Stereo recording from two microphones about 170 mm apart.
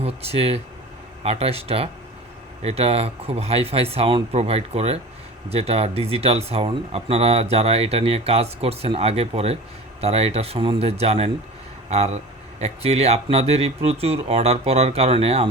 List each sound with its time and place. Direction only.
0.0 s speech: 35° right (ahead or behind)